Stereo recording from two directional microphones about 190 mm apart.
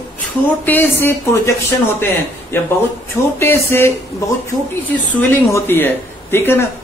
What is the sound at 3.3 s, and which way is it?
Speech, 15° left (ahead or behind).